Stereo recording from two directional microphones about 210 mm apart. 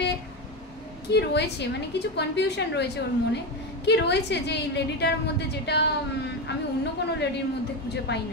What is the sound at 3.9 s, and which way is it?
A woman's voice, 55° left (ahead or behind).